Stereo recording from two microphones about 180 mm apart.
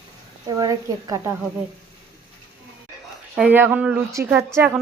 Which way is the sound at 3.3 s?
10° right (ahead or behind).